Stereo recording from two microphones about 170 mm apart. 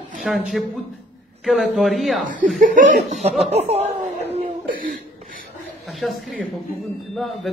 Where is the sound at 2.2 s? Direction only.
50° right (ahead or behind).